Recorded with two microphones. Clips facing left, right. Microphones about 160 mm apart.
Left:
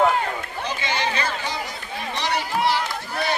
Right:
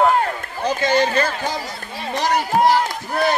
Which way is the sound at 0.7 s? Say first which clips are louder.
Right 9 dB; 45° right (ahead or behind).